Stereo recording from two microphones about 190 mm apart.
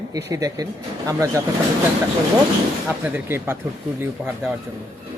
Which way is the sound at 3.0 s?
10° right (ahead or behind).